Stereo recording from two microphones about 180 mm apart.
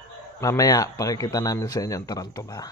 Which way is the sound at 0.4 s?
20° left (ahead or behind).